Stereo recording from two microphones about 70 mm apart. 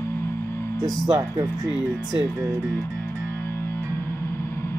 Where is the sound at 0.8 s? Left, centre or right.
Right.